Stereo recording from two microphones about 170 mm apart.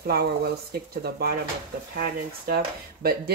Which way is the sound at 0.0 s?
65° right (ahead or behind).